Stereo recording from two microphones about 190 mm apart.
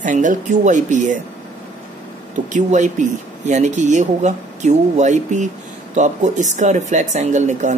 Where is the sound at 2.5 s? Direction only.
40° right (ahead or behind).